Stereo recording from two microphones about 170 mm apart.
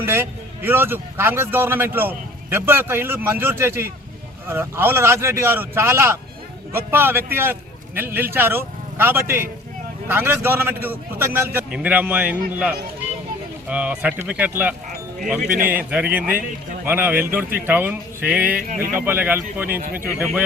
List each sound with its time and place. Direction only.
0.0 s speech: 15° right (ahead or behind)
15.4 s a man's voice: 55° right (ahead or behind)
15.9 s speech: 5° right (ahead or behind)
19.7 s a man's voice: 55° right (ahead or behind)